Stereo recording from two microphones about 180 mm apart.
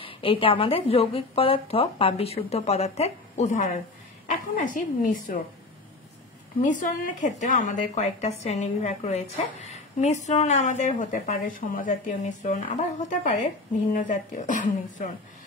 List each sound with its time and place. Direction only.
0.0 s a woman's voice: 30° left (ahead or behind); by 5.4 s 50° left (ahead or behind)
7.2 s a woman's voice: 40° left (ahead or behind)